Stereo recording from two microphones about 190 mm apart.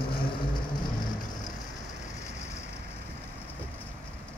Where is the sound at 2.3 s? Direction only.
35° left (ahead or behind).